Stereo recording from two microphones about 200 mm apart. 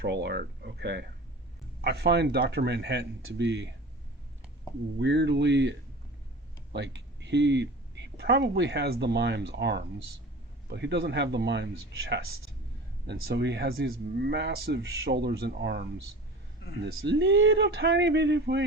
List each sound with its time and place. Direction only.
0.0 s speech: 60° right (ahead or behind)
4.9 s speech: 60° right (ahead or behind)
6.7 s speech: 60° right (ahead or behind)